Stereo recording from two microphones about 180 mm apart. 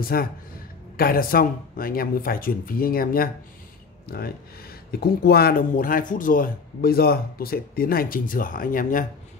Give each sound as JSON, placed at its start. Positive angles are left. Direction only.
{"t": 0.0, "sound": "speech", "side_deg": 55}
{"t": 5.0, "sound": "speech", "side_deg": 60}